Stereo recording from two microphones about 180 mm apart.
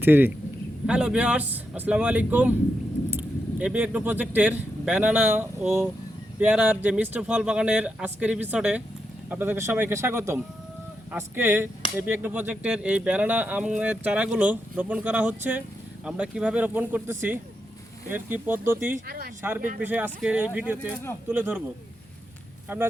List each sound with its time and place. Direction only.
0.0 s speech: 10° right (ahead or behind)
19.0 s speech: 60° right (ahead or behind)
19.4 s speech: 10° right (ahead or behind)